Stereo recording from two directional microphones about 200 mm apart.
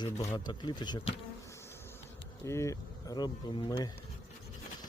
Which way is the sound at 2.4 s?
15° left (ahead or behind).